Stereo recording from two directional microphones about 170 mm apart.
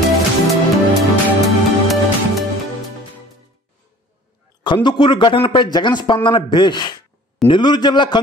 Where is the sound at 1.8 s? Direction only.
Centre (ahead or behind).